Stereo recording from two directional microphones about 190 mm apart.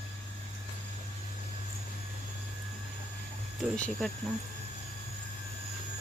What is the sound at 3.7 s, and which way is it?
Speech, 5° left (ahead or behind).